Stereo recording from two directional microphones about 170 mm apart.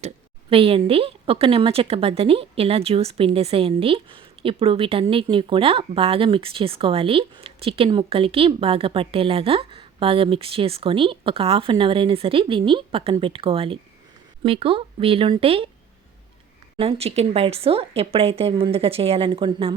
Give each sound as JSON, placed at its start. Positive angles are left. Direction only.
{"t": 0.5, "sound": "a woman's voice", "side_deg": -35}
{"t": 16.7, "sound": "a woman's voice", "side_deg": -35}